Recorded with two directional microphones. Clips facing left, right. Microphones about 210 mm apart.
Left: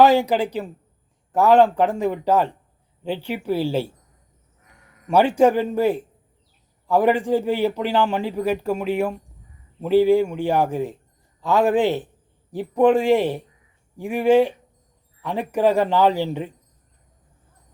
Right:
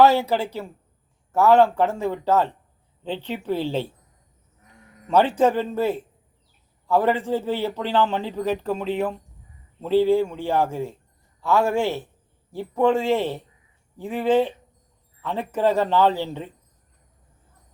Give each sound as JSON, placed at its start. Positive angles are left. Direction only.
{"t": 0.0, "sound": "a man's voice", "side_deg": 15}
{"t": 5.0, "sound": "a man's voice", "side_deg": 10}